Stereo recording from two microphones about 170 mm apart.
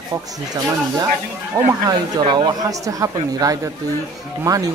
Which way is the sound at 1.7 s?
25° right (ahead or behind).